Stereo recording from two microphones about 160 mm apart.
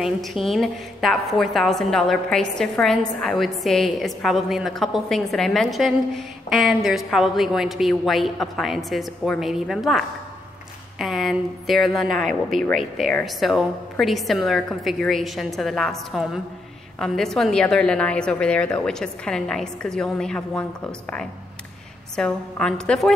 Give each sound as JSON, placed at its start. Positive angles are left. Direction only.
{"t": 0.0, "sound": "a woman's voice", "side_deg": 0}
{"t": 22.1, "sound": "a woman's voice", "side_deg": 5}